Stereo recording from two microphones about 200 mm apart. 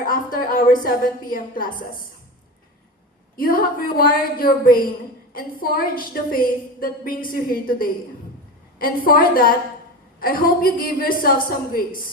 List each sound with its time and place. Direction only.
0.0 s a woman's voice: 45° left (ahead or behind)
3.3 s a woman's voice: 45° left (ahead or behind)